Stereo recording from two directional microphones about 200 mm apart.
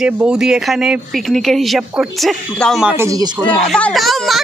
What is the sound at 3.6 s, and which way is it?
Speech, 5° left (ahead or behind).